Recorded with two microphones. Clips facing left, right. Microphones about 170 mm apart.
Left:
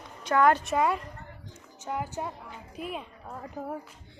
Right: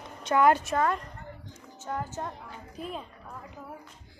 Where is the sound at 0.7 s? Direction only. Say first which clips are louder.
Left 1 dB; 10° left (ahead or behind).